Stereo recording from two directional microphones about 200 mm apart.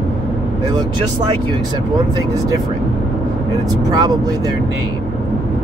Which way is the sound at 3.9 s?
20° right (ahead or behind).